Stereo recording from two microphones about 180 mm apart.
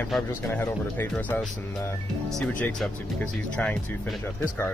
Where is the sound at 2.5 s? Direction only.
10° left (ahead or behind).